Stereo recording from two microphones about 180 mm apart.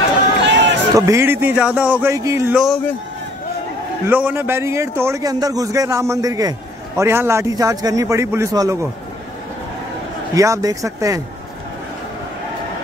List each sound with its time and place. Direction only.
0.5 s run: 80° right
0.9 s a man's voice: 15° right (ahead or behind)
2.5 s speech: centre (ahead or behind)
4.1 s a man's voice: 10° right (ahead or behind)
10.3 s speech: 20° right (ahead or behind)